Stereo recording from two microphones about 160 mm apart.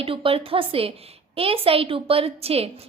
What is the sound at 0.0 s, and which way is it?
A woman's voice, 35° right (ahead or behind).